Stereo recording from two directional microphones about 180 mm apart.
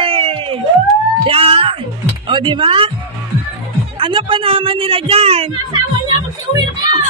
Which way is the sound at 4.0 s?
30° right (ahead or behind).